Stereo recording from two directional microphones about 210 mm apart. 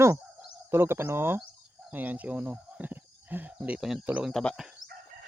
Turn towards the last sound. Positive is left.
turn(degrees=0)  # may be behind; listen again after turning